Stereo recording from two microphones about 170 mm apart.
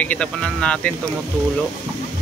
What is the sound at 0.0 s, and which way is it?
Speech, 5° left (ahead or behind).